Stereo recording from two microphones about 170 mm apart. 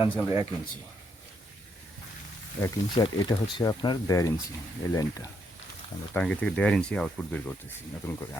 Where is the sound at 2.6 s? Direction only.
15° left (ahead or behind).